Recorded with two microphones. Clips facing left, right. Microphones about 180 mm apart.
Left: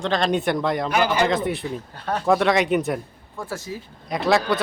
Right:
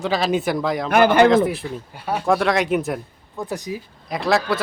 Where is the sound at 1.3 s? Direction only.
Centre (ahead or behind).